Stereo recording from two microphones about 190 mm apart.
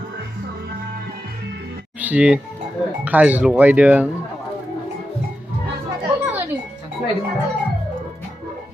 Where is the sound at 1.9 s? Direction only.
10° right (ahead or behind).